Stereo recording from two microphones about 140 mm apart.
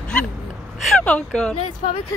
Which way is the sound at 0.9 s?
5° left (ahead or behind).